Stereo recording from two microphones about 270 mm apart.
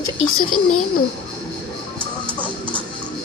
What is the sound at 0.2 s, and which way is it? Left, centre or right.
Speech, left.